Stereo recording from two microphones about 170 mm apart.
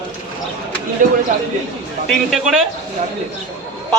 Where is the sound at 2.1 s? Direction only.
Centre (ahead or behind).